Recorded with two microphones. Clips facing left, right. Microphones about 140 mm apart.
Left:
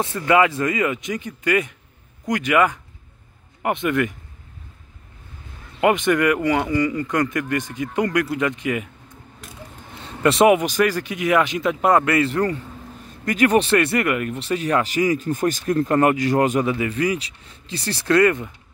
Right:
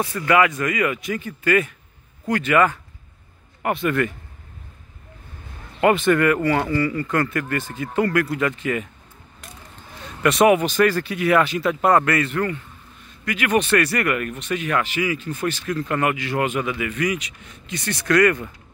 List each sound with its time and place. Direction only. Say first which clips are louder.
0.1 s speech: left 1 dB; 25° left (ahead or behind)
5.8 s speech: right 1 dB; 15° left (ahead or behind)
9.4 s a sound: even; centre (ahead or behind)
10.0 s speech: left 1 dB; 30° left (ahead or behind)
10.6 s speech: right 1 dB; 10° left (ahead or behind)